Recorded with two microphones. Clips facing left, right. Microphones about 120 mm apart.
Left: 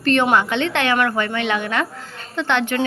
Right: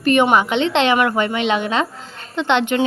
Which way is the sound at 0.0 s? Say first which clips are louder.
Right 2 dB; 15° right (ahead or behind).